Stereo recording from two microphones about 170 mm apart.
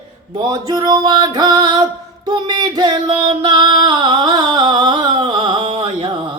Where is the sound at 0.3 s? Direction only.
25° right (ahead or behind).